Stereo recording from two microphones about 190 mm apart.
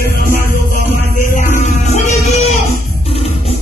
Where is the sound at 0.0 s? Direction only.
50° left (ahead or behind).